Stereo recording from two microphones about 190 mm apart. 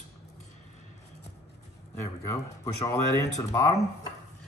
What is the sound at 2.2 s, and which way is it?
Speech, 15° left (ahead or behind).